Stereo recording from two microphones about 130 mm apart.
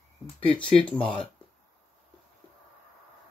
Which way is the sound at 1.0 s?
40° left (ahead or behind).